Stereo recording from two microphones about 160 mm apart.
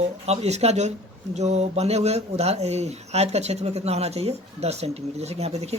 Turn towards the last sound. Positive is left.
turn(degrees=-40)  # may be behind; listen again after turning